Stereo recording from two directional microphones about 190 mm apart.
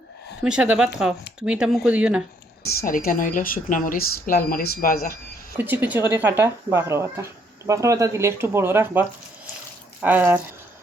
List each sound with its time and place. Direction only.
0.4 s speech: 5° right (ahead or behind)
2.6 s speech: 50° left (ahead or behind)
5.5 s speech: 10° right (ahead or behind)